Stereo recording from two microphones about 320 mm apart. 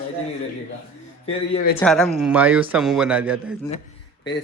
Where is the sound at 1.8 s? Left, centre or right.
Centre.